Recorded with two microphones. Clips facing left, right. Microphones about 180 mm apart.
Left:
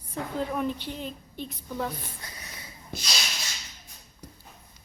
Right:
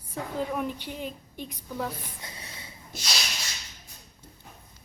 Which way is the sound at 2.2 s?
25° right (ahead or behind).